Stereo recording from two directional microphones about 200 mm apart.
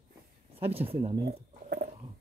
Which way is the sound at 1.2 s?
50° right (ahead or behind).